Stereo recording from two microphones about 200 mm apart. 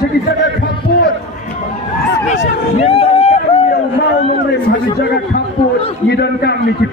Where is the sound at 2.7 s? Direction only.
30° left (ahead or behind).